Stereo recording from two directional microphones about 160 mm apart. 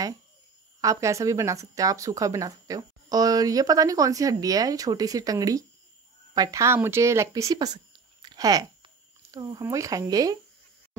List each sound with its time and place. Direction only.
0.7 s speech: 20° right (ahead or behind)